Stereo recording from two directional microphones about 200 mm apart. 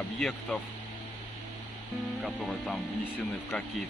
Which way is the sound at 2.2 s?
Centre (ahead or behind).